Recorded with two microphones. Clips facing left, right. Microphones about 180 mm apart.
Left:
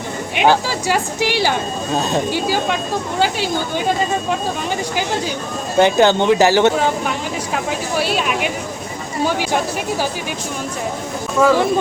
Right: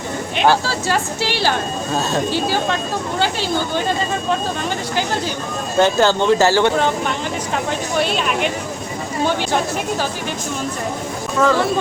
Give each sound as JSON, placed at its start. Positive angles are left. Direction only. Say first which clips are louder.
{"t": 0.3, "sound": "speech", "louder": "left 1 dB", "side_deg": 15}
{"t": 5.8, "sound": "speech", "louder": "left 2 dB", "side_deg": 15}
{"t": 7.5, "sound": "speech", "louder": "even", "side_deg": 5}
{"t": 11.4, "sound": "speech", "louder": "left 2 dB", "side_deg": 10}